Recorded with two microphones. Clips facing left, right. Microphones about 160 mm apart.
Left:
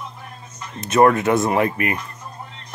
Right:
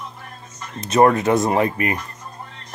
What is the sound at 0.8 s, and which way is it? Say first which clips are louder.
Speech: even; 30° right (ahead or behind).